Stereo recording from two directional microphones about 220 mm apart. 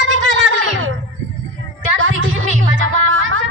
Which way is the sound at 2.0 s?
65° right (ahead or behind).